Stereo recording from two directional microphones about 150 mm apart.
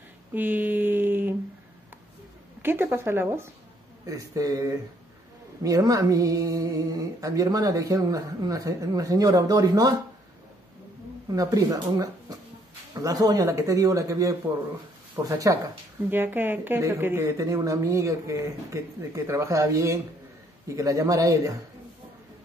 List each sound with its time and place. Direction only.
0.3 s a sound: 10° right (ahead or behind)
2.6 s a woman's voice: 15° right (ahead or behind)
11.3 s speech: 25° right (ahead or behind)